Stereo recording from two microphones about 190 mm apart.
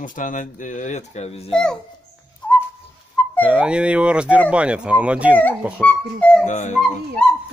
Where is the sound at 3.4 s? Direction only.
5° right (ahead or behind).